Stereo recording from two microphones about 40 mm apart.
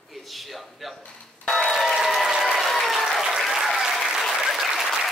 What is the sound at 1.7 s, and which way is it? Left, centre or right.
Applause, centre.